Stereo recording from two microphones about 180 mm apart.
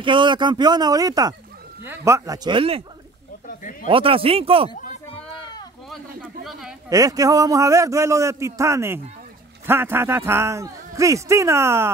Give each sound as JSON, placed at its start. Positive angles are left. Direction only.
{"t": 0.0, "sound": "speech", "side_deg": -25}
{"t": 3.8, "sound": "speech", "side_deg": -30}
{"t": 6.9, "sound": "a man's voice", "side_deg": -20}